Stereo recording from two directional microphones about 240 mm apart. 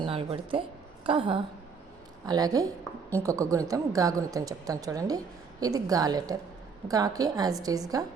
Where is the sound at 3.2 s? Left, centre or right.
Centre.